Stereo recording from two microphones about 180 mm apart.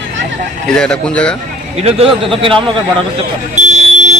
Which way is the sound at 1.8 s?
35° right (ahead or behind).